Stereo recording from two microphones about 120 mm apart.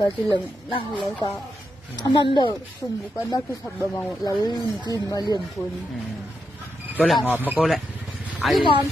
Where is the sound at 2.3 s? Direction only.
40° left (ahead or behind).